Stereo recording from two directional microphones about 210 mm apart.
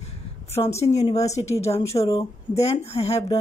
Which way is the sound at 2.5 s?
30° left (ahead or behind).